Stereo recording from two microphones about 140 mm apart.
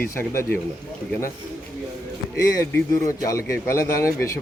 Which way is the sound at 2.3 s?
25° left (ahead or behind).